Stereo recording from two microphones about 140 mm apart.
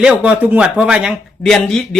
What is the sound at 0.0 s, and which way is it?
Speech, 10° right (ahead or behind).